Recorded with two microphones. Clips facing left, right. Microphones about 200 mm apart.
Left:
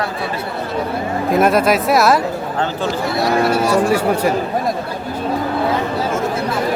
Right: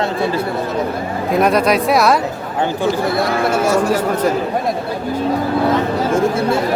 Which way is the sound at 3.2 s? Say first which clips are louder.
Left 1 dB; 50° right (ahead or behind).